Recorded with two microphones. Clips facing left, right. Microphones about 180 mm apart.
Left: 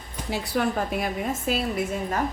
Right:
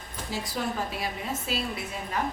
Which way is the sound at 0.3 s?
60° left (ahead or behind).